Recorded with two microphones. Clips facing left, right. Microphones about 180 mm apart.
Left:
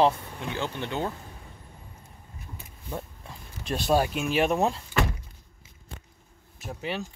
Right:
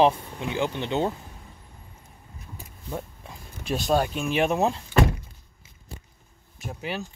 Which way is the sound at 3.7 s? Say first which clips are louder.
Even; 5° left (ahead or behind).